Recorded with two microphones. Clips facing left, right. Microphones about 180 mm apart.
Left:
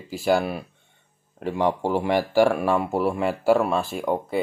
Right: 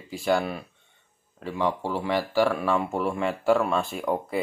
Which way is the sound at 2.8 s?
5° left (ahead or behind).